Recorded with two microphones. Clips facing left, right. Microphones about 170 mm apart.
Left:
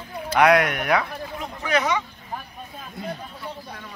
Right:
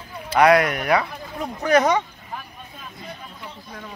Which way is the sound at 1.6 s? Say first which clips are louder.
Right 6 dB; 45° right (ahead or behind).